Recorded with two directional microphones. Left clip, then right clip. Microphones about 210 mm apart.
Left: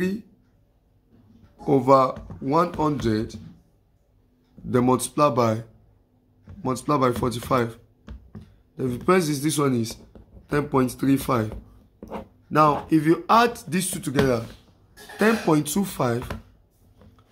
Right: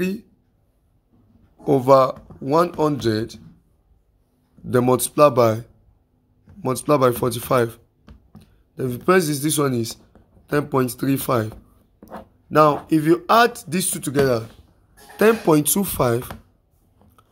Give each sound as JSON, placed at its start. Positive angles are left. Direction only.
{"t": 1.7, "sound": "speech", "side_deg": -40}
{"t": 4.6, "sound": "speech", "side_deg": -40}